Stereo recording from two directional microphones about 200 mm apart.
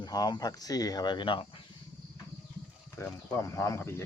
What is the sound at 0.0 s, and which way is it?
Speech, 20° left (ahead or behind).